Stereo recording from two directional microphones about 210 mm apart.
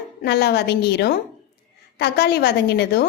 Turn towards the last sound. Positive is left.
turn(degrees=50)  # may be behind; listen again after turning